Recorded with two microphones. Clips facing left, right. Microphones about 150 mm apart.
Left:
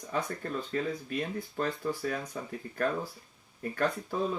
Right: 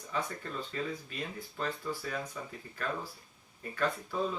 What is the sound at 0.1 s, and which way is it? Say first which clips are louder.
Speech: left 4 dB; 45° left (ahead or behind).